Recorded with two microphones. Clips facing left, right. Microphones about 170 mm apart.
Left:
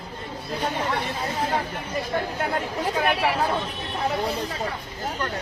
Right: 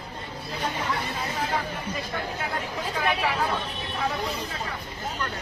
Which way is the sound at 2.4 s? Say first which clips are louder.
Left 5 dB; 55° left (ahead or behind).